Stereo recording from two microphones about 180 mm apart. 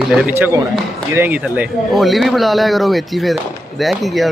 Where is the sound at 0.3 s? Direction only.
15° right (ahead or behind).